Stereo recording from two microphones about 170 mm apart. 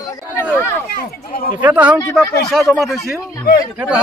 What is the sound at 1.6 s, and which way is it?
A man's voice, 10° right (ahead or behind).